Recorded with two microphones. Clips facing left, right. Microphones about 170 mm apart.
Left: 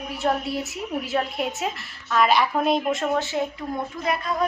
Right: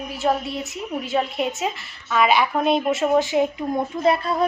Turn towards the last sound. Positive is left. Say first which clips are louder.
# right 5 dB
turn(degrees=-30)  # may be behind; listen again after turning